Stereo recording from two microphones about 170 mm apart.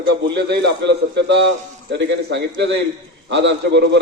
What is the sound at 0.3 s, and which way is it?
A man's voice, 85° right.